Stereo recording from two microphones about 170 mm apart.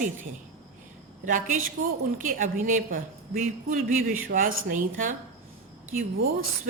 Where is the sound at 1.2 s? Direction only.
50° right (ahead or behind).